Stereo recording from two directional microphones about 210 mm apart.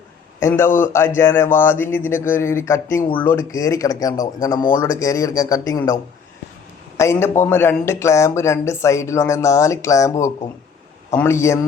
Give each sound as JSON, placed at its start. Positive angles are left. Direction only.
{"t": 0.3, "sound": "a man's voice", "side_deg": 15}